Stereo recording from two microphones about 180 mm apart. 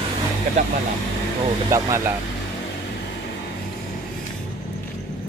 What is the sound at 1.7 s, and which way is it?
Speech, 15° right (ahead or behind).